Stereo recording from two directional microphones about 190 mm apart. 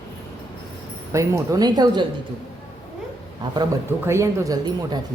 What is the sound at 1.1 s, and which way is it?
Speech, 15° right (ahead or behind).